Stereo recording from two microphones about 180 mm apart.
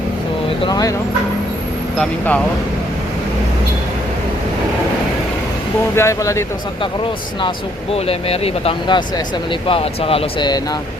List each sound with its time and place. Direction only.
0.6 s speech: 20° left (ahead or behind)
2.0 s speech: 10° left (ahead or behind)
6.0 s speech: 15° left (ahead or behind)
7.9 s speech: 35° left (ahead or behind)